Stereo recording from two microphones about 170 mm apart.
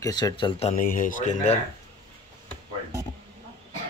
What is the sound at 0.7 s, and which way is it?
Speech, 50° left (ahead or behind).